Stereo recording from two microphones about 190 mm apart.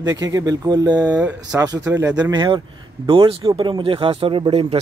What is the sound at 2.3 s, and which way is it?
Speech, 25° right (ahead or behind).